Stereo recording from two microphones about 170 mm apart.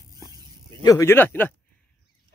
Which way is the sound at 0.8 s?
15° left (ahead or behind).